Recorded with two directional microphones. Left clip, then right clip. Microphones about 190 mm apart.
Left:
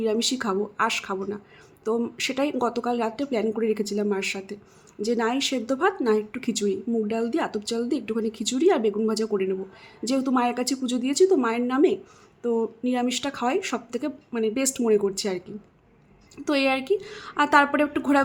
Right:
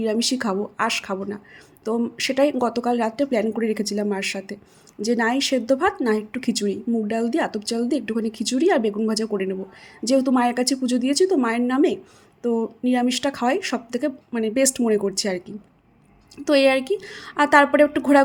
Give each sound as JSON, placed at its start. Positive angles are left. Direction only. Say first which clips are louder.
{"t": 0.0, "sound": "speech", "louder": "right 2 dB", "side_deg": -15}